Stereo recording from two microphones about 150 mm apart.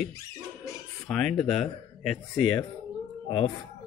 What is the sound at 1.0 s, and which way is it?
Speech, 5° left (ahead or behind).